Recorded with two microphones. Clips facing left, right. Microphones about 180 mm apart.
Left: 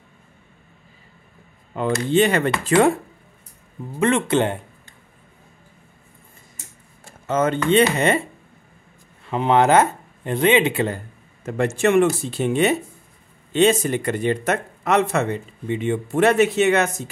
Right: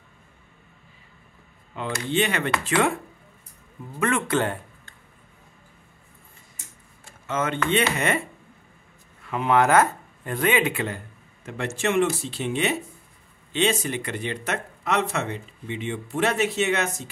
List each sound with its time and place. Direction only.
1.7 s speech: 40° left (ahead or behind)
4.0 s speech: 25° left (ahead or behind)
7.2 s speech: 40° left (ahead or behind)
9.2 s speech: 30° left (ahead or behind)
11.4 s speech: 50° left (ahead or behind)